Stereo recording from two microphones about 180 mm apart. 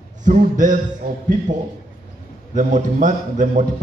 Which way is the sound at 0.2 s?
45° right (ahead or behind).